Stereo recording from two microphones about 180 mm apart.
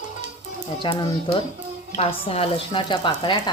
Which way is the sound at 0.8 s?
30° left (ahead or behind).